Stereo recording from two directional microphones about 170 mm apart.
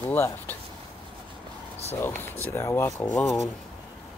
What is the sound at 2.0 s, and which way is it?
Speech, 15° left (ahead or behind).